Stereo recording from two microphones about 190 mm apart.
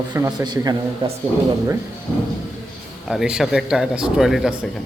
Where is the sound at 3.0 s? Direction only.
Centre (ahead or behind).